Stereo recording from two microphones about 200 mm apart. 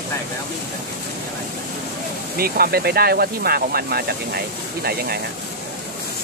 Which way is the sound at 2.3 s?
50° right (ahead or behind).